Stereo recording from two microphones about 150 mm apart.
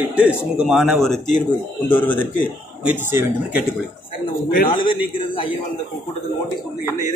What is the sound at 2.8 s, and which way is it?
Speech, 15° right (ahead or behind).